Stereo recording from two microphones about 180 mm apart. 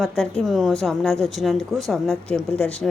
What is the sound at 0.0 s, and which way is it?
A woman's voice, centre (ahead or behind).